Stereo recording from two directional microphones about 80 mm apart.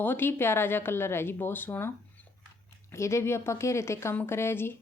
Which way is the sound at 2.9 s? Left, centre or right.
Left.